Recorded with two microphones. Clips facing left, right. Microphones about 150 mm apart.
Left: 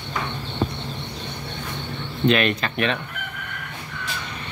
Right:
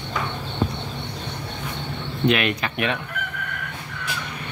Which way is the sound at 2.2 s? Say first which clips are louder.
Left 1 dB; 10° right (ahead or behind).